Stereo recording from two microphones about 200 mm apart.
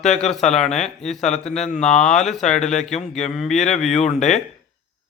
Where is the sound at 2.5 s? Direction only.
35° left (ahead or behind).